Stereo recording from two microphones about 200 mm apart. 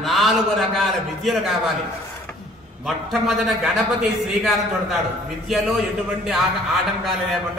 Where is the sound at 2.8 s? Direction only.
Centre (ahead or behind).